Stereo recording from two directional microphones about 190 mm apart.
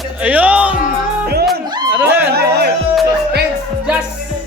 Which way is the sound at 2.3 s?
55° right (ahead or behind).